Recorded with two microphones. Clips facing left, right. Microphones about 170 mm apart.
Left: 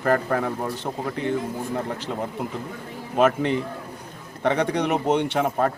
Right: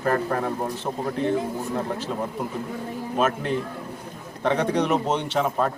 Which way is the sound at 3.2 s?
75° left (ahead or behind).